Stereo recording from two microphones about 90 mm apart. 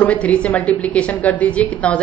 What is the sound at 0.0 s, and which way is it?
A woman's voice, 15° left (ahead or behind).